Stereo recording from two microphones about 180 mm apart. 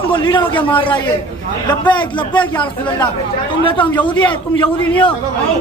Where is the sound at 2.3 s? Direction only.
10° left (ahead or behind).